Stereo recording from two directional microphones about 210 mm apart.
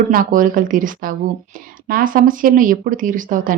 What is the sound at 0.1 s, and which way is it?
A woman's voice, 40° right (ahead or behind).